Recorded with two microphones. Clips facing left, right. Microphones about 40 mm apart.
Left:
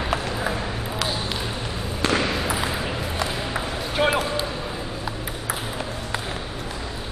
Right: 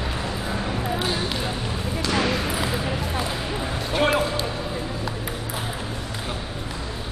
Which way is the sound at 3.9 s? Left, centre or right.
Centre.